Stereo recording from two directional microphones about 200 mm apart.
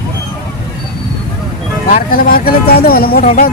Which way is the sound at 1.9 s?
45° left (ahead or behind).